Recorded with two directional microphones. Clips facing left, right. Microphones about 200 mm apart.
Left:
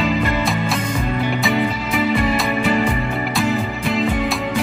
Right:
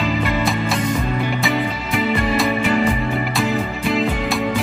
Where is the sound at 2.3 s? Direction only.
Centre (ahead or behind).